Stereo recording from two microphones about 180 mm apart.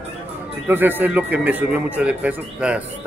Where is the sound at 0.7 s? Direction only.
10° right (ahead or behind).